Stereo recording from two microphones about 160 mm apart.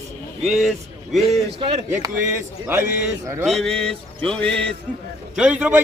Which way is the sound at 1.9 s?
15° right (ahead or behind).